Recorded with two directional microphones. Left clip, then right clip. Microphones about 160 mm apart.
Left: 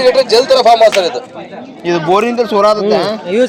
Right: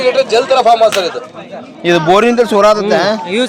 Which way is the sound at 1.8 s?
45° right (ahead or behind).